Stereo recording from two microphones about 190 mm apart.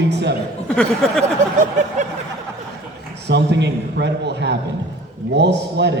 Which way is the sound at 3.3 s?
65° right (ahead or behind).